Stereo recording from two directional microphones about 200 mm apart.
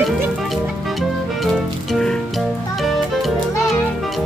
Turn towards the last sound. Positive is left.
turn(degrees=0)  # may be behind; listen again after turning